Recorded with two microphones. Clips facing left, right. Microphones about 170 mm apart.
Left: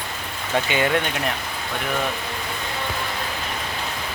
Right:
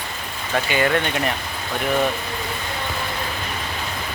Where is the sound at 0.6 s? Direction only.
20° left (ahead or behind).